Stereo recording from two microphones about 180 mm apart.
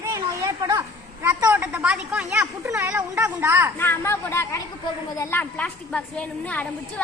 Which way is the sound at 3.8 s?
10° left (ahead or behind).